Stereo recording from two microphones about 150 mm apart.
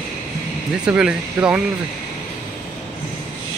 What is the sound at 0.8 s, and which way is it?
Speech, 5° right (ahead or behind).